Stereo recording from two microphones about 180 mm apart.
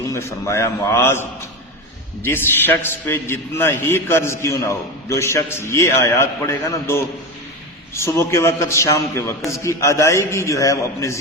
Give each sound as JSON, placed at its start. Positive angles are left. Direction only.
{"t": 0.1, "sound": "a man's voice", "side_deg": 15}